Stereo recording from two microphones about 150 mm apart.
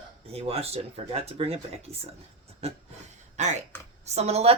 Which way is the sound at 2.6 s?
50° right (ahead or behind).